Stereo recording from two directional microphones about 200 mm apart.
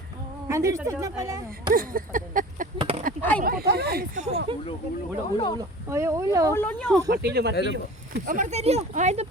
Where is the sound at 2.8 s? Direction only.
30° right (ahead or behind).